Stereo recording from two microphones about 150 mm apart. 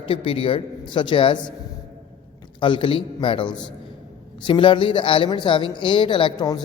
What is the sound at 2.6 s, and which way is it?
A man's voice, 35° left (ahead or behind).